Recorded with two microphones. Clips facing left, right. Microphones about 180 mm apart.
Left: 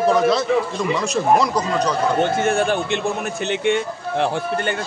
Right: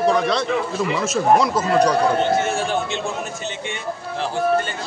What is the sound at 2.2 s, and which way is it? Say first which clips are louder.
Speech: left 2 dB; 55° left (ahead or behind).